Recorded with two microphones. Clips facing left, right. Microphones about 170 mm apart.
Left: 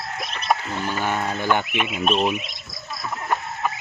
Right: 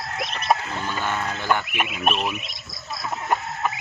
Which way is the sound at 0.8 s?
15° left (ahead or behind).